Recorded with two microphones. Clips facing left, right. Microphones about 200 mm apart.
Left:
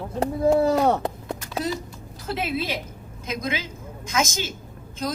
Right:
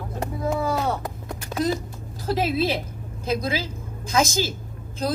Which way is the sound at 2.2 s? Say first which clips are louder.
Right 5 dB; 35° right (ahead or behind).